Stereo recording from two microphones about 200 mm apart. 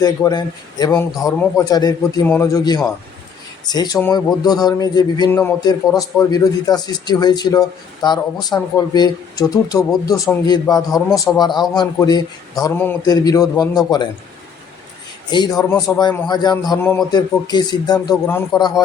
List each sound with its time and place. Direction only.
0.0 s a man's voice: 20° left (ahead or behind)
12.6 s speech: 10° left (ahead or behind)
15.3 s a man's voice: 20° left (ahead or behind)